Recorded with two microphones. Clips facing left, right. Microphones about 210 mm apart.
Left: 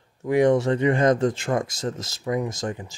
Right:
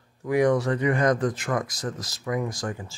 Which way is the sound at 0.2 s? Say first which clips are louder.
Left 3 dB; 25° left (ahead or behind).